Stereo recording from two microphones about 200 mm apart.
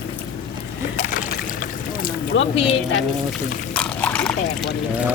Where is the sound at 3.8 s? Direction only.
5° left (ahead or behind).